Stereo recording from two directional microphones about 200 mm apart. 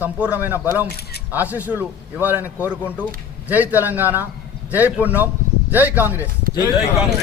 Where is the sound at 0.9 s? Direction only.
50° left (ahead or behind).